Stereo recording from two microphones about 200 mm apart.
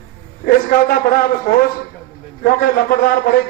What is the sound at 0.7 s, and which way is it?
A man's voice, 45° left (ahead or behind).